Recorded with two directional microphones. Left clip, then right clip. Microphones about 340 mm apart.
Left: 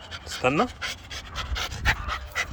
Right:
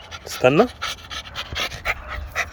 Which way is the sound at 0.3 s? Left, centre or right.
Right.